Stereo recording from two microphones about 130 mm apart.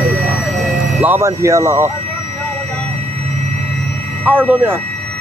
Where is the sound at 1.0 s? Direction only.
20° right (ahead or behind).